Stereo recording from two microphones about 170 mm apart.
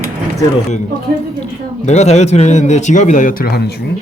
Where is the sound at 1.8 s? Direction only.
40° left (ahead or behind).